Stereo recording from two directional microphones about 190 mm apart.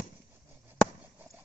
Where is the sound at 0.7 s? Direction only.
10° right (ahead or behind).